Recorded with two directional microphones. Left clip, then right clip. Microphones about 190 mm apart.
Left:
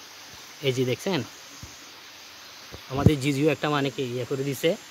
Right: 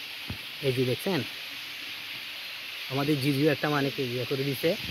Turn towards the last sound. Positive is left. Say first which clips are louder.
# left 2 dB
turn(degrees=15)  # may be behind; listen again after turning